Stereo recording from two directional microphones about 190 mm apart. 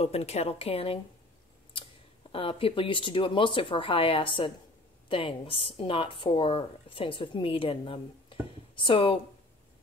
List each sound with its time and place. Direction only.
0.0 s a woman's voice: 35° left (ahead or behind)
2.3 s speech: 30° left (ahead or behind)